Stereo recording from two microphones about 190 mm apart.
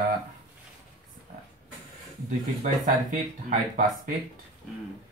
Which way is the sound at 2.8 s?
45° right (ahead or behind).